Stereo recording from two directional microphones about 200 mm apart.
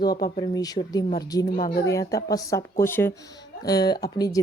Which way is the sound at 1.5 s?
45° left (ahead or behind).